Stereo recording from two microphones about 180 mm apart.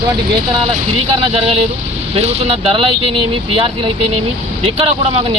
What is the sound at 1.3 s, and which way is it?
Speech, 30° right (ahead or behind).